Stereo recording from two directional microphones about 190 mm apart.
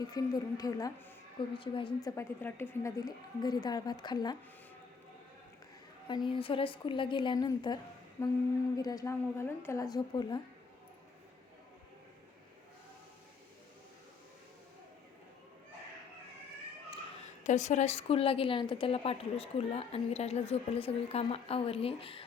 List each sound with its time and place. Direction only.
0.0 s a woman's voice: 20° left (ahead or behind)
6.1 s a woman's voice: 25° left (ahead or behind)
8.2 s humming: 10° left (ahead or behind)
8.7 s a woman's voice: 20° left (ahead or behind)
17.4 s a woman's voice: 40° left (ahead or behind)